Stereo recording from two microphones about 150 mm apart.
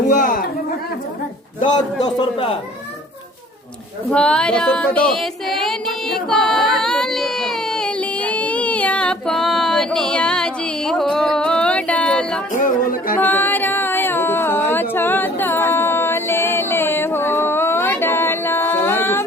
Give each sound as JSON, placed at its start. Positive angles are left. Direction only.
{"t": 0.1, "sound": "a sound", "side_deg": 60}
{"t": 2.0, "sound": "a man's voice", "side_deg": 35}
{"t": 4.1, "sound": "child singing", "side_deg": 5}
{"t": 6.2, "sound": "baby cry", "side_deg": 0}
{"t": 12.5, "sound": "music", "side_deg": 65}
{"t": 13.1, "sound": "a sound", "side_deg": 10}